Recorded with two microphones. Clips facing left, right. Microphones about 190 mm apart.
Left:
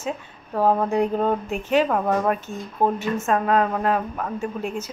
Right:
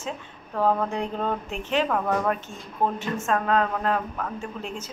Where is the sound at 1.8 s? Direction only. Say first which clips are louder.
Left 3 dB; 20° left (ahead or behind).